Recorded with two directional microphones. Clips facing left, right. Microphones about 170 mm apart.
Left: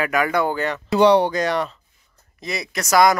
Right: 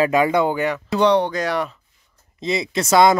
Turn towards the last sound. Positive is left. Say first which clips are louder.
# right 2 dB
turn(degrees=-25)  # may be behind; listen again after turning